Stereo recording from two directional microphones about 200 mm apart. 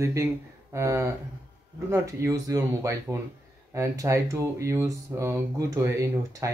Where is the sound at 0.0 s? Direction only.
15° right (ahead or behind).